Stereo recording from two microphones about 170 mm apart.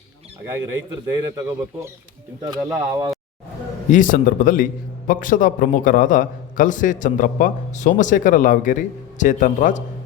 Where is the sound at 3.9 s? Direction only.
50° left (ahead or behind).